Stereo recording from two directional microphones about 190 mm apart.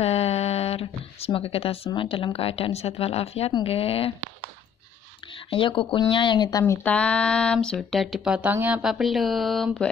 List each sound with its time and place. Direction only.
0.0 s speech: 35° left (ahead or behind)
5.5 s speech: 25° left (ahead or behind)
6.6 s speech: 10° left (ahead or behind)